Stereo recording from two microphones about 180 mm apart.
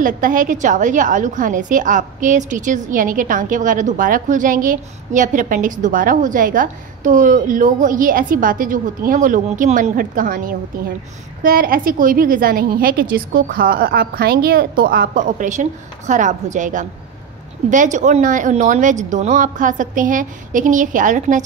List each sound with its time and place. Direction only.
0.0 s a woman's voice: 50° right (ahead or behind)